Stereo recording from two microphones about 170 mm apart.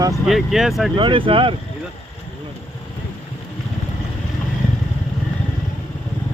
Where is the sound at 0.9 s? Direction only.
30° right (ahead or behind).